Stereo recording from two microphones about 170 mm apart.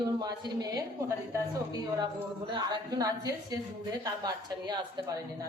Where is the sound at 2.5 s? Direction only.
25° right (ahead or behind).